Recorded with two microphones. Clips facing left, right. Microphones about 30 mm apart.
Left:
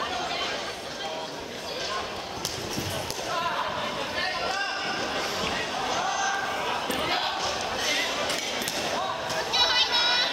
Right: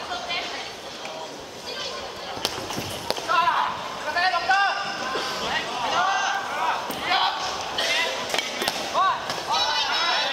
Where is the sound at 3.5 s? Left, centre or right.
Right.